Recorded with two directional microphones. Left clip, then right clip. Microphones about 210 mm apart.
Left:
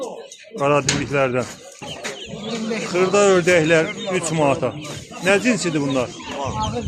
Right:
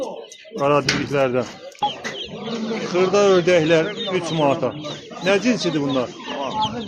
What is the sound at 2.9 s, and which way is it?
Speech, 5° left (ahead or behind).